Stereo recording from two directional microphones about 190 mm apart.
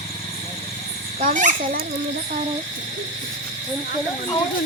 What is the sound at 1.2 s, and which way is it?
Speech, 45° right (ahead or behind).